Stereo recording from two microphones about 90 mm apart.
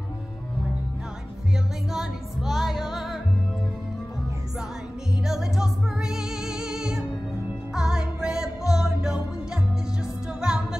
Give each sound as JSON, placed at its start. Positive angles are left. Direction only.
{"t": 1.9, "sound": "music", "side_deg": -5}
{"t": 5.2, "sound": "music", "side_deg": -5}
{"t": 10.4, "sound": "music", "side_deg": -5}